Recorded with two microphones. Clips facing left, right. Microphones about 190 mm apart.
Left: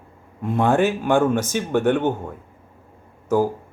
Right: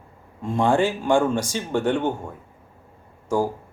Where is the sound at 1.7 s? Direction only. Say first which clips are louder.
Left 3 dB; 10° right (ahead or behind).